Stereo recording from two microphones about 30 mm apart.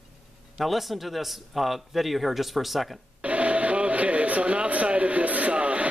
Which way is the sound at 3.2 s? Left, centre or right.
Right.